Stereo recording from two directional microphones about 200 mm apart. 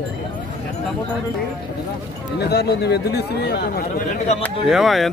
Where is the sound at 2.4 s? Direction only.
55° left (ahead or behind).